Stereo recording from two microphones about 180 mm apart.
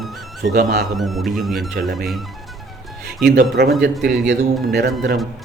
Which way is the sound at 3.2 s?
65° right (ahead or behind).